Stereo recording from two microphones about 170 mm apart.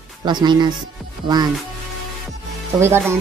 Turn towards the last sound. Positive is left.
turn(degrees=-15)  # may be behind; listen again after turning